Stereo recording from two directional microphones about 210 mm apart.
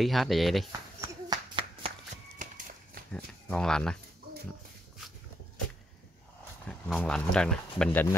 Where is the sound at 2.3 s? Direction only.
45° right (ahead or behind).